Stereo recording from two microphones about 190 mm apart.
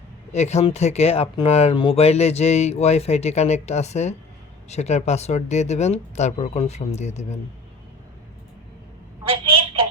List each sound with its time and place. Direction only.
0.3 s speech: 35° left (ahead or behind)